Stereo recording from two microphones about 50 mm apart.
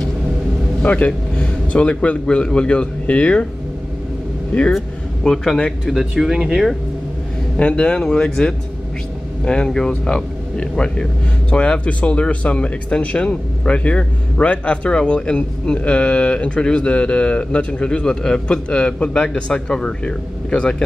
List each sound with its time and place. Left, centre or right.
0.8 s a man's voice: left
4.7 s speech: centre
7.5 s speech: left